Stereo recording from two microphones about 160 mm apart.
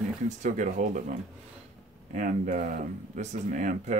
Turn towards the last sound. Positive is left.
turn(degrees=-55)  # may be behind; listen again after turning